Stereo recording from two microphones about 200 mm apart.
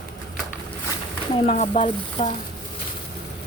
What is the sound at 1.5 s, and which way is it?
Speech, 35° left (ahead or behind).